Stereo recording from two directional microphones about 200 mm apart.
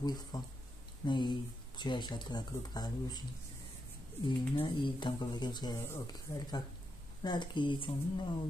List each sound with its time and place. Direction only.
0.0 s speech: 20° left (ahead or behind)
4.6 s speech: 25° left (ahead or behind)